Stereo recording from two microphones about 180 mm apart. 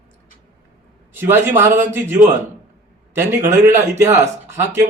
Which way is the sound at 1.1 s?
10° right (ahead or behind).